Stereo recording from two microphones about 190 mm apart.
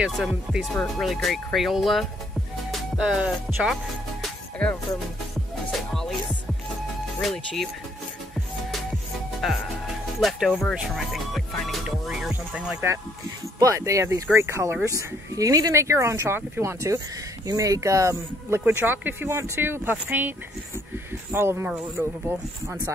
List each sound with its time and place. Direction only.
0.0 s speech: 5° right (ahead or behind)
2.7 s music: 5° right (ahead or behind)
7.2 s speech: centre (ahead or behind)
10.2 s speech: centre (ahead or behind)